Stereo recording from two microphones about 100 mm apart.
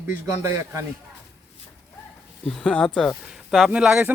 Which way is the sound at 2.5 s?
5° left (ahead or behind).